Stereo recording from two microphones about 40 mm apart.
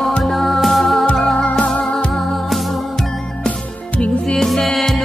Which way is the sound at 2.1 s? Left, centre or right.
Centre.